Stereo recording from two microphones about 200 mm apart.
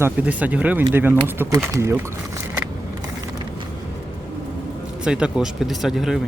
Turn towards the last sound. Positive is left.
turn(degrees=0)  # may be behind; listen again after turning